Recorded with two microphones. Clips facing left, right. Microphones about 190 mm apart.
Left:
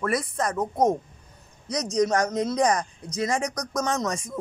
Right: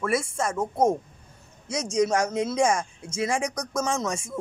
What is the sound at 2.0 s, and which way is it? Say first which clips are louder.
Speech: even; 10° right (ahead or behind).